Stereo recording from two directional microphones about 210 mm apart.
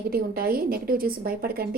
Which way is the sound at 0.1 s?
45° right (ahead or behind).